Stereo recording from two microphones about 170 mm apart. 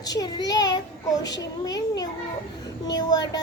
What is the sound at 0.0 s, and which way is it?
Speech, 20° left (ahead or behind).